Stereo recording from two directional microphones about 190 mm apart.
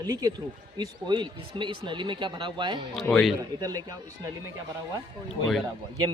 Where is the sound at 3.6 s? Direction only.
20° right (ahead or behind).